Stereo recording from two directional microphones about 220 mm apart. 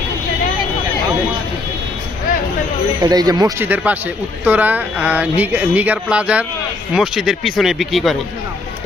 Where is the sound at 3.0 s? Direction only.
15° right (ahead or behind).